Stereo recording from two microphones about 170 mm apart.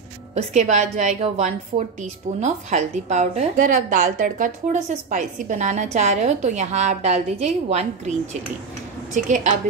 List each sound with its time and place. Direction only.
0.3 s a woman's voice: 40° right (ahead or behind)